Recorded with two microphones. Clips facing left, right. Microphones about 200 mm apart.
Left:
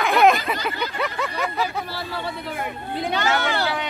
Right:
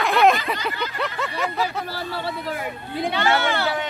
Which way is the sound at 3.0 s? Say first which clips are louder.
Right 1 dB; 45° left (ahead or behind).